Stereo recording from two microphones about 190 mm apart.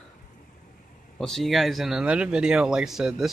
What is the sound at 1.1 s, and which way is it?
Speech, centre (ahead or behind).